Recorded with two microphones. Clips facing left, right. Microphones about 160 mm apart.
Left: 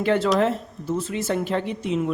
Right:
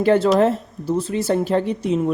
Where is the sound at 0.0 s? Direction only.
40° right (ahead or behind).